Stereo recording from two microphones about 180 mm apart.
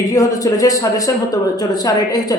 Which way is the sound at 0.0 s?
20° left (ahead or behind).